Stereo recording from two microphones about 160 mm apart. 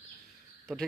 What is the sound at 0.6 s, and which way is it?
Speech, 5° left (ahead or behind).